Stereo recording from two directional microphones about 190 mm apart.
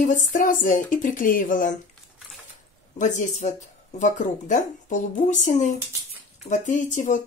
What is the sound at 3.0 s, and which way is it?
Speech, 40° left (ahead or behind).